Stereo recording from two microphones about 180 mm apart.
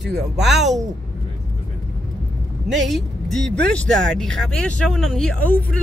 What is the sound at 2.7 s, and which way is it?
Speech, centre (ahead or behind).